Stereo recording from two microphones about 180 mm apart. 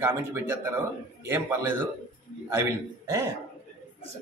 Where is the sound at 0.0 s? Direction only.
10° right (ahead or behind).